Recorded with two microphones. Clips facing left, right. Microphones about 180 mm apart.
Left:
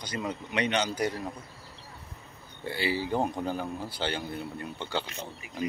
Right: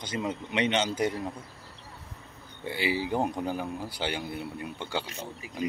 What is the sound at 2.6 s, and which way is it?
Speech, 15° right (ahead or behind).